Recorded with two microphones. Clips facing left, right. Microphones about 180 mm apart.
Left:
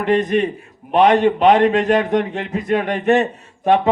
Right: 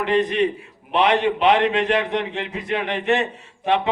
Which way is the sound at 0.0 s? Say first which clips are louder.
Left 3 dB; 45° left (ahead or behind).